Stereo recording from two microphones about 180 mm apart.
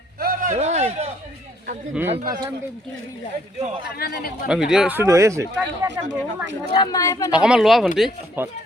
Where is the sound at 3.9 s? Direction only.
60° left (ahead or behind).